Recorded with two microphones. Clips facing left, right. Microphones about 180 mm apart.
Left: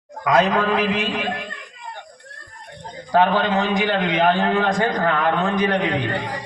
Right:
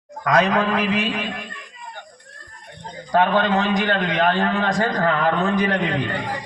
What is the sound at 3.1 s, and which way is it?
A man's voice, 5° left (ahead or behind).